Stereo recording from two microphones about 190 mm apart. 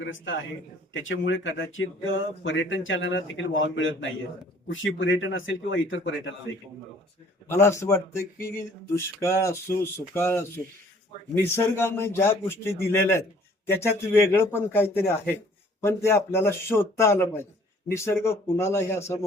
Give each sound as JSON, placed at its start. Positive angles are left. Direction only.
{"t": 0.0, "sound": "a man's voice", "side_deg": 80}
{"t": 7.4, "sound": "speech", "side_deg": 15}